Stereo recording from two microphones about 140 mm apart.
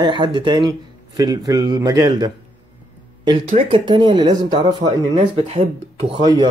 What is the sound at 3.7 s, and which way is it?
Speech, 35° right (ahead or behind).